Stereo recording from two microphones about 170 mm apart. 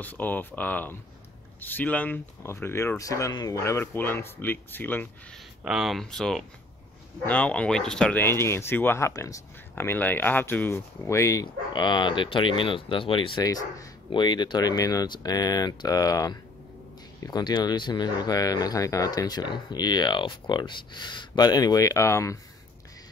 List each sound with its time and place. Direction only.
0.0 s speech: 10° left (ahead or behind)
5.6 s speech: 5° right (ahead or behind); by 22.4 s 15° left (ahead or behind)